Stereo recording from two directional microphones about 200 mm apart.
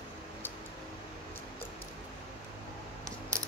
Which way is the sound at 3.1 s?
15° right (ahead or behind).